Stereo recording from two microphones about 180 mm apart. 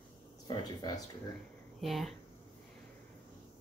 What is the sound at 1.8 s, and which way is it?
Speech, centre (ahead or behind).